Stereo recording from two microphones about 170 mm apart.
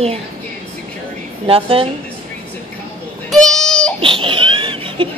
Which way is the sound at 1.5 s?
35° right (ahead or behind).